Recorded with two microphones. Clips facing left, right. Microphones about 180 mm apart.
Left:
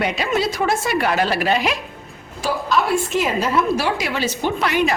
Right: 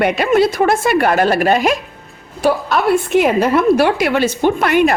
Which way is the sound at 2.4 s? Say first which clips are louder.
Right 5 dB; 60° right (ahead or behind).